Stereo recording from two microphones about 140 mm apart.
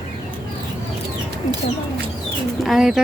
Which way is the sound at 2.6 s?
Centre (ahead or behind).